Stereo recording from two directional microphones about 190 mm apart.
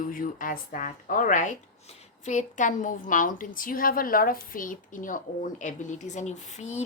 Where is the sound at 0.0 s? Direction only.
45° left (ahead or behind).